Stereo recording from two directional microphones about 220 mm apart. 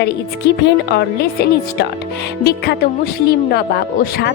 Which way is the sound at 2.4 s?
45° left (ahead or behind).